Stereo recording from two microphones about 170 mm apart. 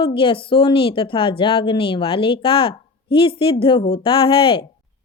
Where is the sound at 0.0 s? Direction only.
30° left (ahead or behind).